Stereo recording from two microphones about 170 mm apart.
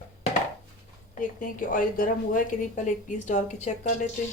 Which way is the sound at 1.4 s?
55° left (ahead or behind).